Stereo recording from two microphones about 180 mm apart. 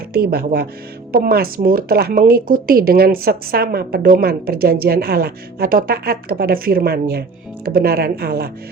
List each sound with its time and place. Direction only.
0.1 s speech: 55° right (ahead or behind)